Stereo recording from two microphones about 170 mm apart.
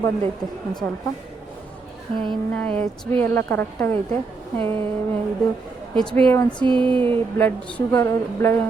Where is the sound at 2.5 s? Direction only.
10° left (ahead or behind).